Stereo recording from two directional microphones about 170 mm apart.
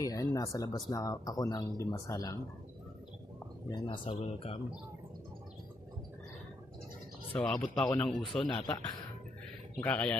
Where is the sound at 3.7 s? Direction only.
30° left (ahead or behind).